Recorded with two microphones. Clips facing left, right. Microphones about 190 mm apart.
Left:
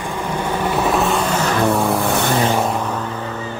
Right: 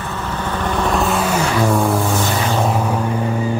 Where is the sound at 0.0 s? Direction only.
15° left (ahead or behind).